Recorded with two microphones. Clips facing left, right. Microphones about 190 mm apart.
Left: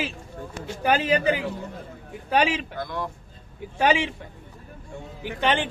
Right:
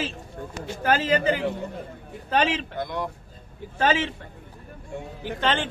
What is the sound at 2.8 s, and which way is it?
Speech, 20° right (ahead or behind).